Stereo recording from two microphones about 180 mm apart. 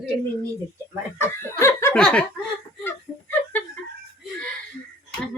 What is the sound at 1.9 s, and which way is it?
Speech, 5° left (ahead or behind).